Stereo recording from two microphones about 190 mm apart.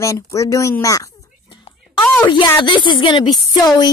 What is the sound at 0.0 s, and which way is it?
A woman's voice, 15° left (ahead or behind).